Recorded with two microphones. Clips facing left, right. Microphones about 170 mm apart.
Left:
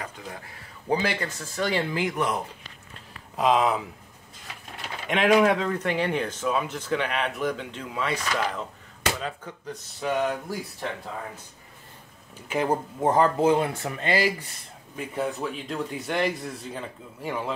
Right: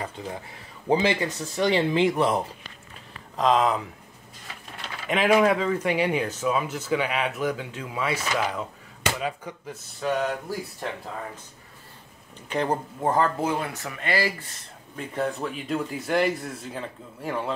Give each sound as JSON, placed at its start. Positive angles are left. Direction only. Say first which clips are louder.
{"t": 0.2, "sound": "speech", "louder": "right 5 dB", "side_deg": -25}
{"t": 3.3, "sound": "speech", "louder": "even", "side_deg": 5}
{"t": 5.0, "sound": "speech", "louder": "even", "side_deg": 0}
{"t": 9.9, "sound": "speech", "louder": "even", "side_deg": 0}
{"t": 12.4, "sound": "speech", "louder": "left 1 dB", "side_deg": 5}
{"t": 13.0, "sound": "speech", "louder": "left 4 dB", "side_deg": 20}
{"t": 15.0, "sound": "speech", "louder": "right 1 dB", "side_deg": 0}